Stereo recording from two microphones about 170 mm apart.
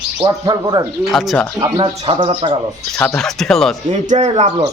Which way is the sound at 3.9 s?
45° right (ahead or behind).